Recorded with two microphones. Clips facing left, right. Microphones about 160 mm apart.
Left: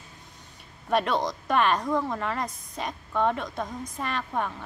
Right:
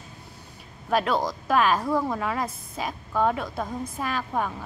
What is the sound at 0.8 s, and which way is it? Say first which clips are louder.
A woman's voice: right 1 dB; centre (ahead or behind).